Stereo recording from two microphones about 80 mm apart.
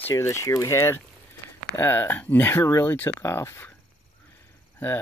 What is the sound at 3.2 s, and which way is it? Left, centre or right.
Speech, left.